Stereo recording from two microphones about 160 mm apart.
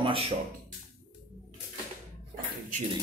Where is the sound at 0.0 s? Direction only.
35° right (ahead or behind).